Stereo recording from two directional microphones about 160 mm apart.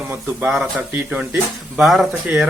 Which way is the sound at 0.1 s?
10° right (ahead or behind).